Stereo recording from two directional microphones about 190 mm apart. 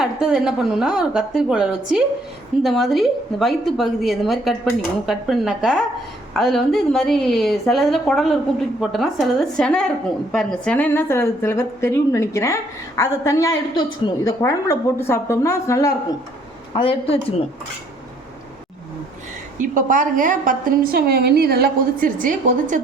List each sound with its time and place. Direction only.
0.0 s a woman's voice: centre (ahead or behind); by 15.9 s 15° left (ahead or behind)
16.7 s a woman's voice: 30° left (ahead or behind)
19.5 s a woman's voice: 40° right (ahead or behind)